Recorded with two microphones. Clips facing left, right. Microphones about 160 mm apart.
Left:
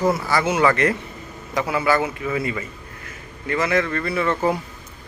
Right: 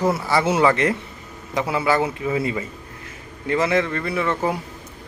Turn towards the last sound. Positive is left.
turn(degrees=-15)  # may be behind; listen again after turning